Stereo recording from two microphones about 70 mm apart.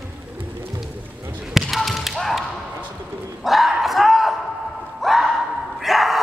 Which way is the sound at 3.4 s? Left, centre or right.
Centre.